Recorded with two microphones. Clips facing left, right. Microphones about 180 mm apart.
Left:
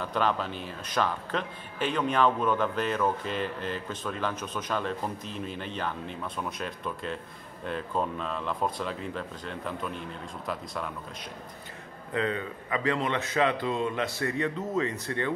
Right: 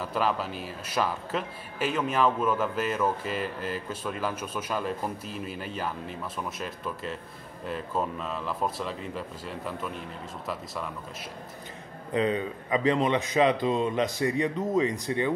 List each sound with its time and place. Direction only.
0.0 s a man's voice: 5° right (ahead or behind)
12.1 s a man's voice: 15° right (ahead or behind)